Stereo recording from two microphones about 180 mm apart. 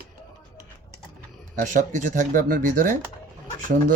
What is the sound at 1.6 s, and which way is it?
Speech, 45° right (ahead or behind).